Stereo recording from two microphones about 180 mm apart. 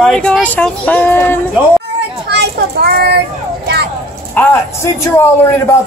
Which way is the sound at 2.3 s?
65° right (ahead or behind).